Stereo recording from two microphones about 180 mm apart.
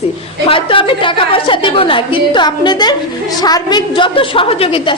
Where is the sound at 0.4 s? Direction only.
30° left (ahead or behind).